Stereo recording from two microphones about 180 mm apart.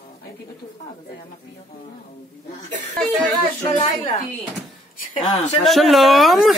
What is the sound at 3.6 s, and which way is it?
Speech, 30° left (ahead or behind).